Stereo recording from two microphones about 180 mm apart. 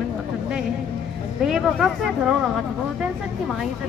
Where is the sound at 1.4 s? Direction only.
Centre (ahead or behind).